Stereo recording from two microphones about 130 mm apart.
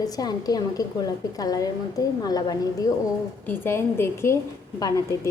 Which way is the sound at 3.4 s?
15° left (ahead or behind).